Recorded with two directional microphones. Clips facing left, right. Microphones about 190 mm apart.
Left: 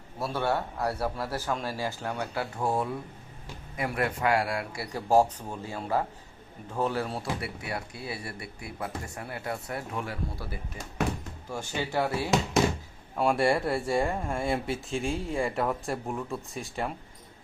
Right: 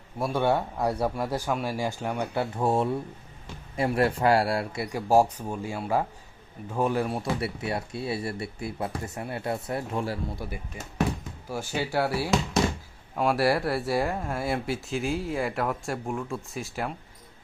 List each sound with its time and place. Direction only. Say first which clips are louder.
0.2 s speech: right 4 dB; 15° right (ahead or behind); by 4.8 s 35° right (ahead or behind)
4.8 s speech: right 1 dB; 10° right (ahead or behind); by 10.2 s 30° right (ahead or behind)
10.3 s speech: right 2 dB; 15° right (ahead or behind); by 16.9 s centre (ahead or behind)